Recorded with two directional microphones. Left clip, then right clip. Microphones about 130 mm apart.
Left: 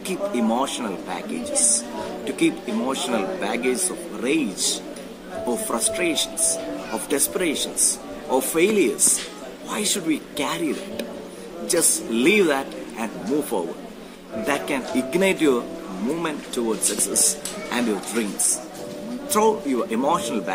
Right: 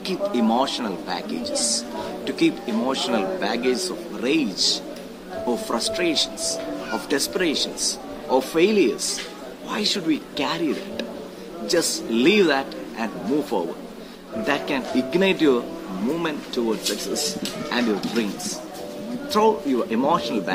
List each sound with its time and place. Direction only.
0.3 s speech: centre (ahead or behind)
2.2 s speech: centre (ahead or behind)
5.5 s speech: 5° left (ahead or behind)
9.9 s speech: centre (ahead or behind)
12.1 s speech: centre (ahead or behind)
19.3 s speech: centre (ahead or behind)